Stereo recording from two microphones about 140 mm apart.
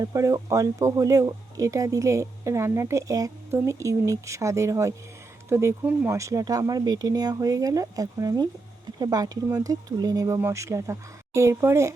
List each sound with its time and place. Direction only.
0.0 s speech: 20° right (ahead or behind)